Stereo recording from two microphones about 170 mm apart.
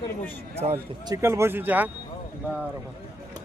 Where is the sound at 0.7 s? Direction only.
15° right (ahead or behind).